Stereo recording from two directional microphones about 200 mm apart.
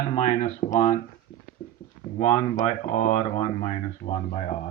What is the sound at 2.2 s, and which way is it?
Speech, 20° left (ahead or behind).